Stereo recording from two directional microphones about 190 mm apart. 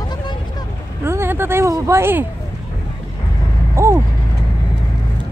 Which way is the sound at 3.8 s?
15° right (ahead or behind).